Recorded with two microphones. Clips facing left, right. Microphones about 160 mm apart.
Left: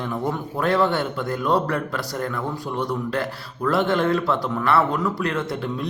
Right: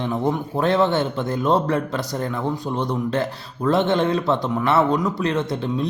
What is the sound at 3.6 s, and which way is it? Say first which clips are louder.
Speech: right 2 dB; 20° right (ahead or behind).